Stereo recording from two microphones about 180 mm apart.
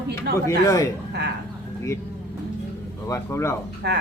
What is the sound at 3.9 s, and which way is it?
Speech, 65° right (ahead or behind).